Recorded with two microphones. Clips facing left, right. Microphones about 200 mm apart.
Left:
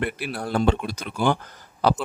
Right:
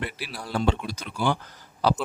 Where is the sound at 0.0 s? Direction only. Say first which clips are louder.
Left 7 dB; 55° left (ahead or behind).